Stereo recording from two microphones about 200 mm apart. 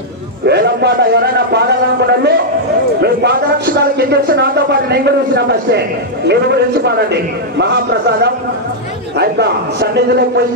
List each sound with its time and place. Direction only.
0.5 s speech: 55° right (ahead or behind)